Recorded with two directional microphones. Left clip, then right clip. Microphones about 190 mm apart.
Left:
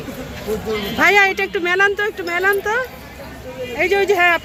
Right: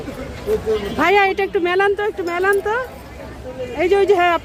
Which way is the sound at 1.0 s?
15° right (ahead or behind).